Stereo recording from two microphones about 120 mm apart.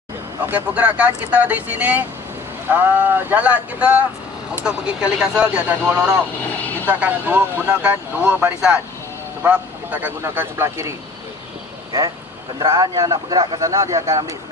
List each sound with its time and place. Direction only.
0.5 s speech: 15° right (ahead or behind)
6.4 s vehicle: 15° left (ahead or behind)
6.9 s speech: 15° right (ahead or behind)
12.5 s speech: 30° right (ahead or behind)
13.6 s speech: 25° right (ahead or behind)